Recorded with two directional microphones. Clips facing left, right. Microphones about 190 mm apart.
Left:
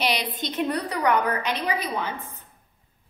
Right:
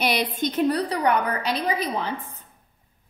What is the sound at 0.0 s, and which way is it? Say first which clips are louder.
Speech: right 3 dB; 50° right (ahead or behind).